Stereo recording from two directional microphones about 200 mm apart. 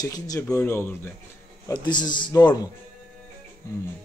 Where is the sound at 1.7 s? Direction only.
20° left (ahead or behind).